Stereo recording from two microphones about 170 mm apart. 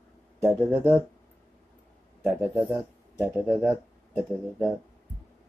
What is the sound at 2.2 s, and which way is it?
Speech, 5° right (ahead or behind).